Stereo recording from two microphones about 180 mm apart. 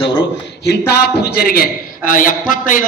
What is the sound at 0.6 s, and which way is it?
A man's voice, 60° left (ahead or behind).